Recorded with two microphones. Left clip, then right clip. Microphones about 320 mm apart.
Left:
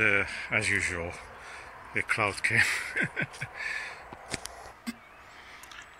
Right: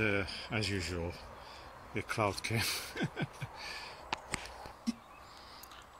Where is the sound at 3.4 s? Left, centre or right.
Centre.